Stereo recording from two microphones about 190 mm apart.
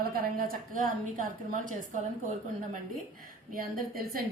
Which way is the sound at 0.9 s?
45° right (ahead or behind).